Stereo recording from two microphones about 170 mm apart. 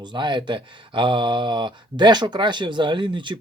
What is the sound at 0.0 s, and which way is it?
Speech, 25° right (ahead or behind).